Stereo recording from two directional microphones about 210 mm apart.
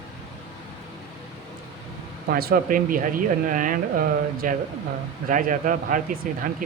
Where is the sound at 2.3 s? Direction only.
45° right (ahead or behind).